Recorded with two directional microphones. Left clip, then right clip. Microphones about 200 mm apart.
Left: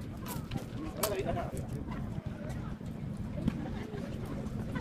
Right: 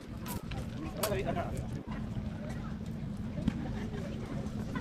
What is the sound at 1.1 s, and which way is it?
Bird, 25° right (ahead or behind).